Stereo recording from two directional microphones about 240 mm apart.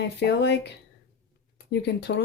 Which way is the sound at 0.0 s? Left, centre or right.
Left.